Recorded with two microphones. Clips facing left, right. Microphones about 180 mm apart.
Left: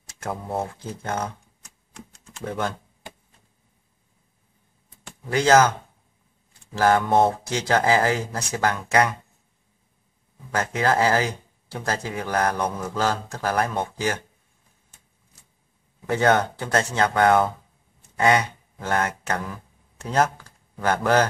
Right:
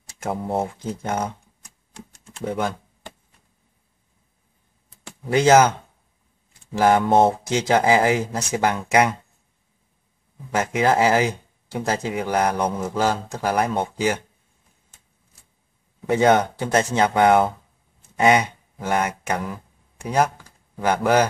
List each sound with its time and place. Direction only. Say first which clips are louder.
0.2 s speech: right 4 dB; 25° right (ahead or behind)
2.4 s speech: right 3 dB; 10° right (ahead or behind)
5.3 s speech: right 3 dB; 20° right (ahead or behind)
10.5 s speech: right 3 dB; 20° right (ahead or behind)
16.1 s speech: right 3 dB; 20° right (ahead or behind)